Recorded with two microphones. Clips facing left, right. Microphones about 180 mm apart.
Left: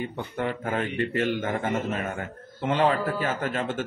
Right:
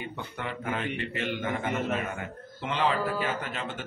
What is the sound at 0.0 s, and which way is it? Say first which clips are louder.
A man's voice: left 7 dB; 45° left (ahead or behind).